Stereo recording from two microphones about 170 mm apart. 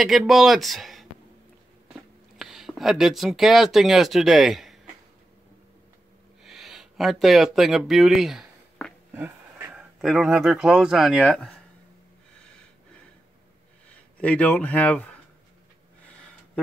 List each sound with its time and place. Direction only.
0.0 s speech: centre (ahead or behind)
2.3 s speech: centre (ahead or behind)
6.4 s a sound: centre (ahead or behind)
9.1 s speech: 10° right (ahead or behind)
14.2 s speech: 10° left (ahead or behind)